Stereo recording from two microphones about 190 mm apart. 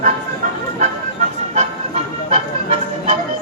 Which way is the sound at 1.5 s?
35° right (ahead or behind).